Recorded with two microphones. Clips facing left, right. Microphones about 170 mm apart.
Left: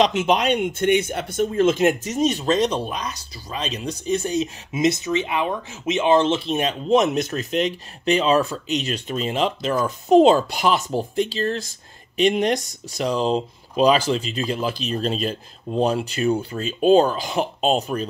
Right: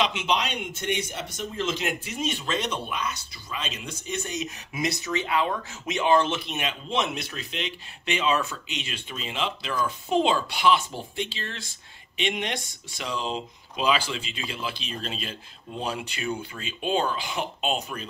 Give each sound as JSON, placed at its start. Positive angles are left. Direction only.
{"t": 0.0, "sound": "speech", "side_deg": 40}